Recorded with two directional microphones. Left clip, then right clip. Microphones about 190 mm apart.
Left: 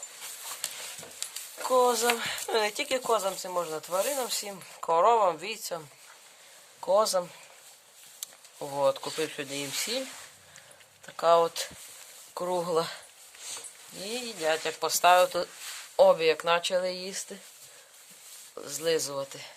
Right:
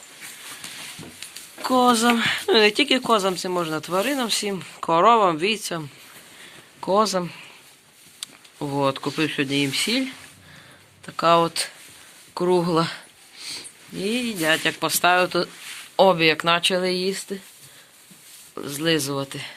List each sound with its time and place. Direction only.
1.6 s speech: centre (ahead or behind)
6.8 s speech: 10° left (ahead or behind)
8.5 s speech: 10° right (ahead or behind)
9.1 s speech: 5° left (ahead or behind)
11.0 s speech: 10° left (ahead or behind)
14.0 s speech: centre (ahead or behind)
17.1 s speech: 20° left (ahead or behind)
18.5 s speech: 10° left (ahead or behind)